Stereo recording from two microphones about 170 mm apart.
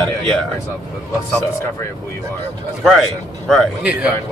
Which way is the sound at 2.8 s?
Centre (ahead or behind).